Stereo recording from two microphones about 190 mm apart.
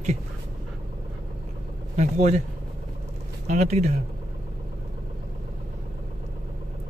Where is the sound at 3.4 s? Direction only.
35° right (ahead or behind).